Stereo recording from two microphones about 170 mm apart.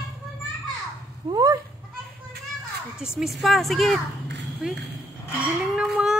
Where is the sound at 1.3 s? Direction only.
20° right (ahead or behind).